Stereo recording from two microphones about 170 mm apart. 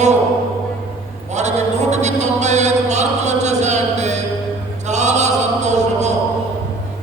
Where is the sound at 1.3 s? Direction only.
45° right (ahead or behind).